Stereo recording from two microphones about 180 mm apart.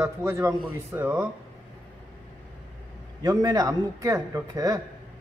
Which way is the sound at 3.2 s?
20° right (ahead or behind).